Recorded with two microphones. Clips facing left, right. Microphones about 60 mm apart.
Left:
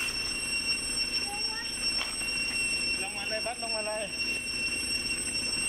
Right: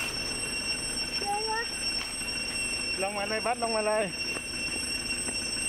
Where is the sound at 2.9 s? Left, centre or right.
Right.